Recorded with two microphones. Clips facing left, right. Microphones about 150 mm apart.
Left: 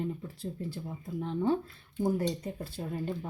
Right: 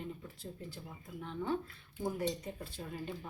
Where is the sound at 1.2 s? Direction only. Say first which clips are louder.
Left 9 dB; 30° left (ahead or behind).